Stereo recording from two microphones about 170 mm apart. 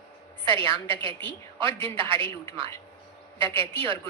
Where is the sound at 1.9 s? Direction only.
30° right (ahead or behind).